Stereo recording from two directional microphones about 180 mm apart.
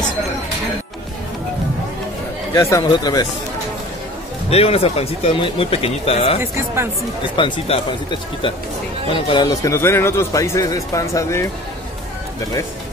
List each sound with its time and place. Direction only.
2.5 s speech: 20° left (ahead or behind)
4.5 s speech: 35° left (ahead or behind)
6.4 s speech: 15° right (ahead or behind)
7.3 s speech: 25° left (ahead or behind)